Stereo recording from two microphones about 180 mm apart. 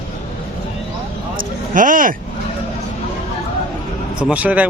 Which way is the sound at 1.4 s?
50° right (ahead or behind).